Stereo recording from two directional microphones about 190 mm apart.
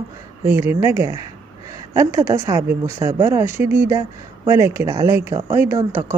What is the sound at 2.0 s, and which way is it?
Speech, 15° right (ahead or behind).